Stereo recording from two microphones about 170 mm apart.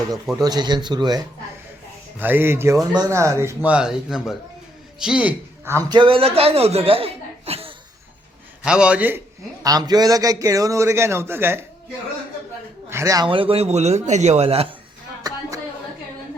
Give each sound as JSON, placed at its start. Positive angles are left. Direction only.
{"t": 0.3, "sound": "a man's voice", "side_deg": -25}
{"t": 2.1, "sound": "a man's voice", "side_deg": -10}
{"t": 6.0, "sound": "speech", "side_deg": -30}
{"t": 8.6, "sound": "speech", "side_deg": -5}
{"t": 9.6, "sound": "a man's voice", "side_deg": -20}
{"t": 12.9, "sound": "a man's voice", "side_deg": -15}
{"t": 15.2, "sound": "a sound", "side_deg": -20}